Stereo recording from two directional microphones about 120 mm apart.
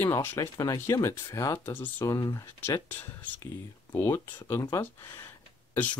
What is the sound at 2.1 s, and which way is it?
Speech, 30° left (ahead or behind).